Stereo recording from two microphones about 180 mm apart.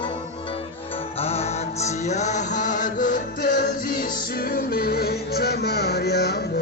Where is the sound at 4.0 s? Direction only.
60° left (ahead or behind).